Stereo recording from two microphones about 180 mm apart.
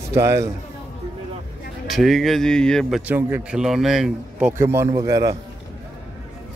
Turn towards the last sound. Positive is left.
turn(degrees=-20)  # may be behind; listen again after turning